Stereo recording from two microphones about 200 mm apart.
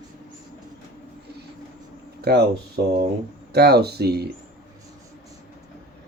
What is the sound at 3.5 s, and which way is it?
Speech, 55° right (ahead or behind).